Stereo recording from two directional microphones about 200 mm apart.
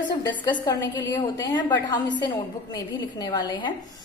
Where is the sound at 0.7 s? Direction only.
20° left (ahead or behind).